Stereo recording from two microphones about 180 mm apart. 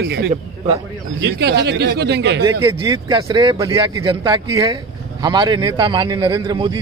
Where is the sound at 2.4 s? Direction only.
25° right (ahead or behind).